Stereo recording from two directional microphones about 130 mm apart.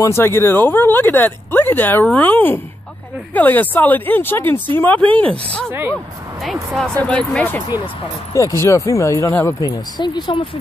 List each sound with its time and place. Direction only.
0.0 s speech: 20° left (ahead or behind)
5.7 s speech: 20° right (ahead or behind)
6.4 s speech: centre (ahead or behind)
7.7 s speech: 30° left (ahead or behind)
9.7 s speech: 35° left (ahead or behind)